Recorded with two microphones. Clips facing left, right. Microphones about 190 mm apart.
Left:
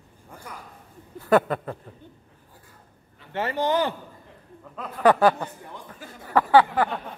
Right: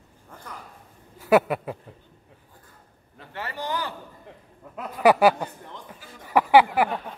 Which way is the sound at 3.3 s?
20° left (ahead or behind).